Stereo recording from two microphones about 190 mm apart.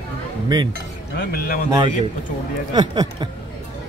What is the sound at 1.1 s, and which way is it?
Speech, 55° left (ahead or behind).